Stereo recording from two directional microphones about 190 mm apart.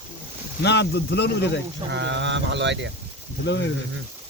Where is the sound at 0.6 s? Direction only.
65° left (ahead or behind).